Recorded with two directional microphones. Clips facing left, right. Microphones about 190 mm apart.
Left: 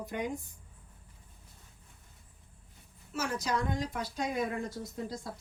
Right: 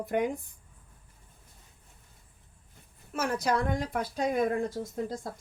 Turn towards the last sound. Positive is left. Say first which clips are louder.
# right 5 dB
turn(degrees=-50)  # may be behind; listen again after turning